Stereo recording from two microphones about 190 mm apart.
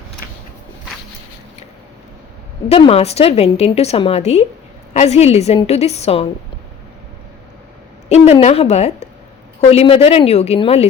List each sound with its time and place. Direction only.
2.6 s a woman's voice: 30° left (ahead or behind)
8.1 s a woman's voice: 35° left (ahead or behind)